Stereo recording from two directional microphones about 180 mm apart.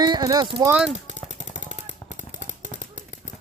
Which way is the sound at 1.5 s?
45° right (ahead or behind).